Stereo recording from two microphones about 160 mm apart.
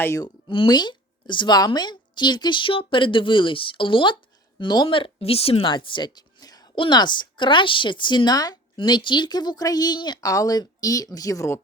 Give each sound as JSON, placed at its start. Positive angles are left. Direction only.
{"t": 0.0, "sound": "a woman's voice", "side_deg": 15}
{"t": 0.4, "sound": "a woman's voice", "side_deg": 30}